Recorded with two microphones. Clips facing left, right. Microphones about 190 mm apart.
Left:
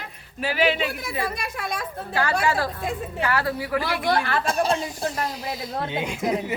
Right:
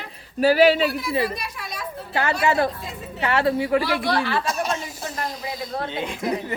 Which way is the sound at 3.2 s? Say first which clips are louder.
Right 5 dB; 25° right (ahead or behind).